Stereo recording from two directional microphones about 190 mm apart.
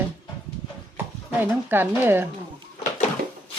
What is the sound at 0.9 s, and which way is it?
Speech, 10° right (ahead or behind).